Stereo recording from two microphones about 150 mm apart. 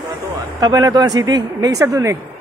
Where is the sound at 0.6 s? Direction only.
25° right (ahead or behind).